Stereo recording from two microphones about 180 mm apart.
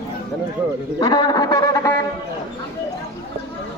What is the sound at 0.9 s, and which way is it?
A man's voice, 25° left (ahead or behind).